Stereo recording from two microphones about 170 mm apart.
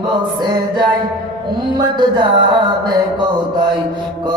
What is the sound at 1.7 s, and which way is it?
Music, 25° right (ahead or behind).